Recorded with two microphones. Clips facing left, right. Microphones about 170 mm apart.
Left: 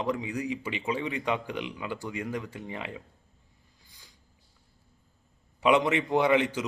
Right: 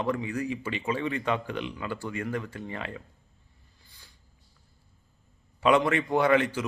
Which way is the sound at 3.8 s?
15° left (ahead or behind).